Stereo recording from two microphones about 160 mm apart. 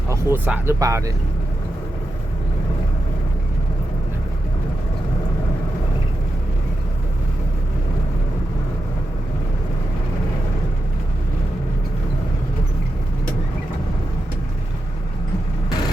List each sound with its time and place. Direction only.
0.1 s speech: 15° right (ahead or behind)